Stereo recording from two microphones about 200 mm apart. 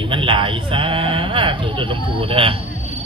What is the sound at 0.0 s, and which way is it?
Speech, 25° right (ahead or behind).